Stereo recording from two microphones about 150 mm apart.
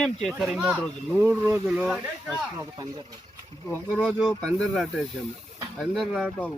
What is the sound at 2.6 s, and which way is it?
Speech, 20° right (ahead or behind).